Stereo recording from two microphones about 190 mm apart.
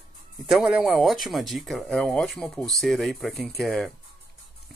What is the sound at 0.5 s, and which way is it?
Speech, 5° right (ahead or behind).